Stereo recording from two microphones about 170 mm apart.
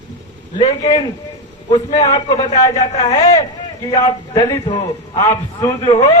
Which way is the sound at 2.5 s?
35° left (ahead or behind).